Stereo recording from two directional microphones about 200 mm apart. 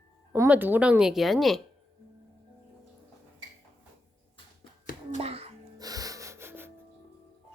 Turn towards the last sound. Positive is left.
turn(degrees=-10)  # may be behind; listen again after turning